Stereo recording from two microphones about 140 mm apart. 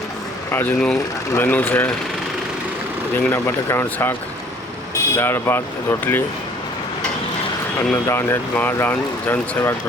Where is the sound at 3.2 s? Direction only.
20° left (ahead or behind).